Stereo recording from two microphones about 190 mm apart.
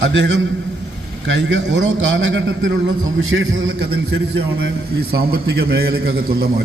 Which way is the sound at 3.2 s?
90° right.